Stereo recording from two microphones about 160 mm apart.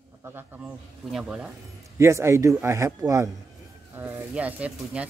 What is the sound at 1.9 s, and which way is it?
A man's voice, 15° right (ahead or behind).